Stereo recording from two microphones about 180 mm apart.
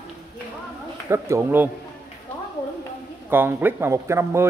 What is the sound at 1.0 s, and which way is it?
Speech, 15° right (ahead or behind).